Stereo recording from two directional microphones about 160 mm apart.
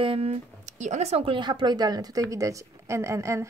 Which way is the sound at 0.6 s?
50° right (ahead or behind).